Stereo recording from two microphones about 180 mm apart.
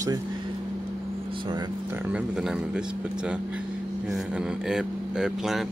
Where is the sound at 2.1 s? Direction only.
5° right (ahead or behind).